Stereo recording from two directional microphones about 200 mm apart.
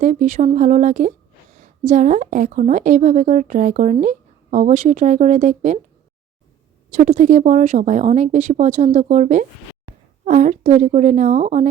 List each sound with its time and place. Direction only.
0.0 s speech: 40° right (ahead or behind)
6.9 s speech: 40° right (ahead or behind)